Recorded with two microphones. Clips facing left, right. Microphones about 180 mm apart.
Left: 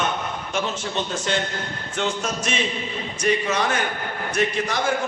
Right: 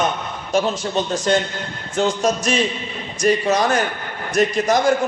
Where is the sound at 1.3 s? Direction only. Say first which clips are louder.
Right 6 dB; 40° right (ahead or behind).